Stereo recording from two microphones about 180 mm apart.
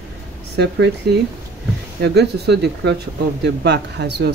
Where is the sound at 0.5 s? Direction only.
70° right (ahead or behind).